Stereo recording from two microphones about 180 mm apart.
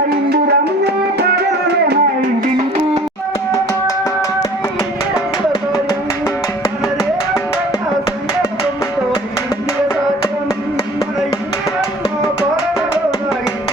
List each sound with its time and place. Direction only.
0.3 s music: 65° right (ahead or behind)